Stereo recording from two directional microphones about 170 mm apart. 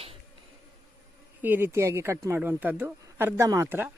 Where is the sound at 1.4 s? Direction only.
10° right (ahead or behind).